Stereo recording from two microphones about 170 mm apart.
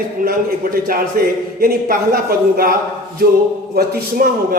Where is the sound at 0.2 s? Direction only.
60° right (ahead or behind).